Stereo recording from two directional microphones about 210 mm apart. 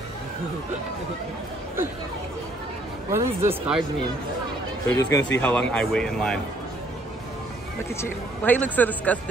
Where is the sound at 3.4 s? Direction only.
5° right (ahead or behind).